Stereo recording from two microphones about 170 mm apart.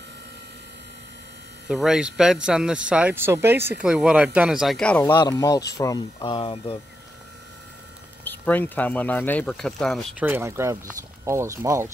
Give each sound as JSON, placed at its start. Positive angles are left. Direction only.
{"t": 1.7, "sound": "speech", "side_deg": -5}
{"t": 5.1, "sound": "speech", "side_deg": 20}
{"t": 6.2, "sound": "speech", "side_deg": 30}
{"t": 8.2, "sound": "speech", "side_deg": 10}
{"t": 10.1, "sound": "speech", "side_deg": -10}